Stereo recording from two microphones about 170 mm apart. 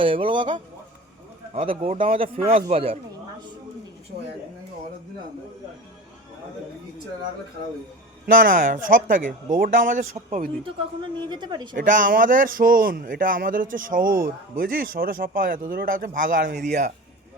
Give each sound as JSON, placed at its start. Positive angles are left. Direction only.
{"t": 0.0, "sound": "a woman's voice", "side_deg": -30}
{"t": 8.3, "sound": "speech", "side_deg": -55}
{"t": 11.0, "sound": "a woman's voice", "side_deg": -25}
{"t": 11.7, "sound": "speech", "side_deg": -50}
{"t": 16.6, "sound": "speech", "side_deg": -65}